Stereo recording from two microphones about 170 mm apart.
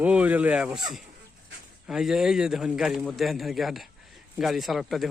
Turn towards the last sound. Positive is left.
turn(degrees=0)  # may be behind; listen again after turning